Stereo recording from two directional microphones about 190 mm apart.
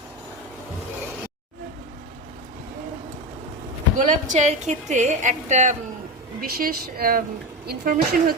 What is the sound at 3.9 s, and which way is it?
A woman's voice, 40° right (ahead or behind).